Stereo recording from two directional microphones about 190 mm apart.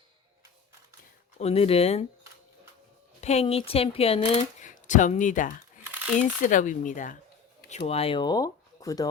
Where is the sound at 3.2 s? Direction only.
35° left (ahead or behind).